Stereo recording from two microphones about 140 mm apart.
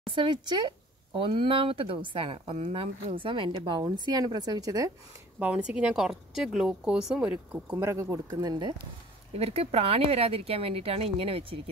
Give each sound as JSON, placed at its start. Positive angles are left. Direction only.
{"t": 0.1, "sound": "speech", "side_deg": -35}
{"t": 5.4, "sound": "a woman's voice", "side_deg": -10}
{"t": 7.7, "sound": "speech", "side_deg": -20}
{"t": 9.3, "sound": "speech", "side_deg": -45}